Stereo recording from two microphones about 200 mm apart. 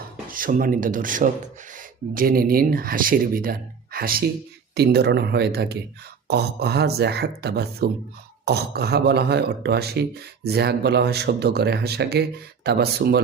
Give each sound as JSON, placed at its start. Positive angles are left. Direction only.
{"t": 0.3, "sound": "speech", "side_deg": -45}